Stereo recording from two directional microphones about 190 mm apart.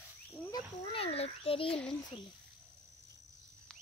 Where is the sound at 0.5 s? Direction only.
30° left (ahead or behind).